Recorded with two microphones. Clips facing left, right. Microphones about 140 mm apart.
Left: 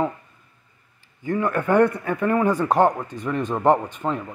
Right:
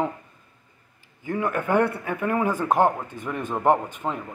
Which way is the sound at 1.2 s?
10° right (ahead or behind).